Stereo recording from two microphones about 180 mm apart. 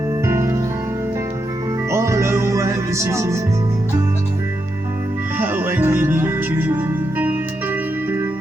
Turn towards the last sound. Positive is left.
turn(degrees=-10)  # may be behind; listen again after turning